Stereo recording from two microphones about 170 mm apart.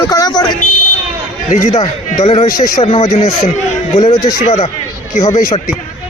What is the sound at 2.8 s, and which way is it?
A man's voice, 40° left (ahead or behind).